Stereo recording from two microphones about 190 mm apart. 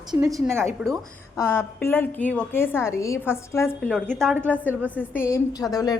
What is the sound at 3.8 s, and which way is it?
Speech, centre (ahead or behind).